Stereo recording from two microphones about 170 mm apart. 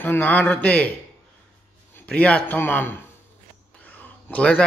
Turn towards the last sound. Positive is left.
turn(degrees=10)  # may be behind; listen again after turning